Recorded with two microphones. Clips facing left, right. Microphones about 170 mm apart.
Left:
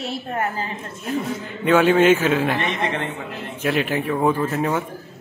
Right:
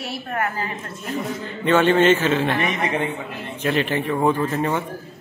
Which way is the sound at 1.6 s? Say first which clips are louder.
Left 1 dB; 10° left (ahead or behind).